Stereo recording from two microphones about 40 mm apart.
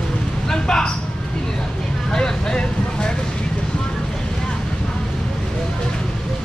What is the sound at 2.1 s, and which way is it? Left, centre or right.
Speech, left.